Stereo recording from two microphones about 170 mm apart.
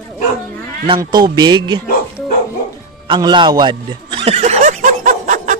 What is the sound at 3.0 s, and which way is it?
Chuckle, 25° right (ahead or behind).